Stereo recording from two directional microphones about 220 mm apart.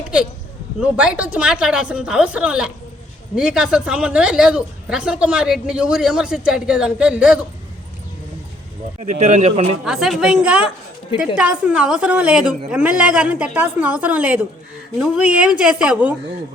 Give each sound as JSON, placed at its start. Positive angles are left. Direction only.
{"t": 0.8, "sound": "a woman's voice", "side_deg": -5}
{"t": 9.0, "sound": "speech", "side_deg": -30}
{"t": 9.8, "sound": "a woman's voice", "side_deg": 0}